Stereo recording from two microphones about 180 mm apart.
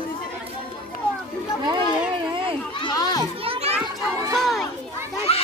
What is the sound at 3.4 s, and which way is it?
Children playing, 35° right (ahead or behind).